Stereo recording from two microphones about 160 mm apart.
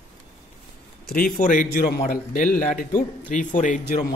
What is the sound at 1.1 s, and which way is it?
Speech, 60° left (ahead or behind).